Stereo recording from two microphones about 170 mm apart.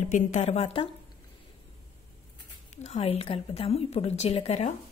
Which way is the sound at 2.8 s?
35° left (ahead or behind).